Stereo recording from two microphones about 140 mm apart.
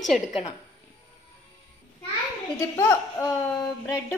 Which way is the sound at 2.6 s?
20° left (ahead or behind).